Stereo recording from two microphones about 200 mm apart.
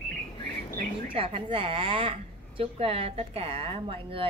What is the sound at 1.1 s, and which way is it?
A woman's voice, 25° right (ahead or behind).